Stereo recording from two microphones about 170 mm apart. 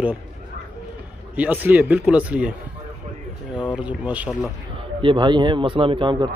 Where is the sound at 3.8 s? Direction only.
10° right (ahead or behind).